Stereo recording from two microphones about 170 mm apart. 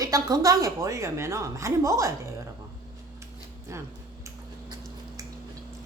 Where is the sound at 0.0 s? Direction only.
20° right (ahead or behind).